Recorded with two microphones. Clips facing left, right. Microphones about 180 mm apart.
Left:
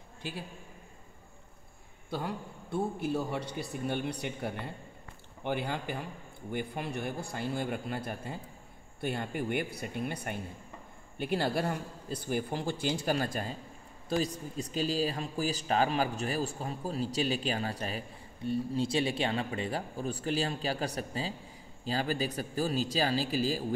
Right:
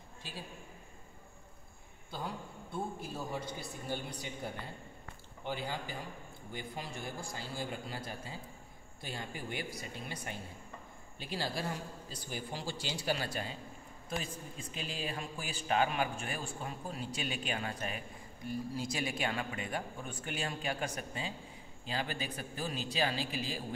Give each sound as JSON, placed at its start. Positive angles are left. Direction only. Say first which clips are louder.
{"t": 2.1, "sound": "a man's voice", "louder": "left 5 dB", "side_deg": 70}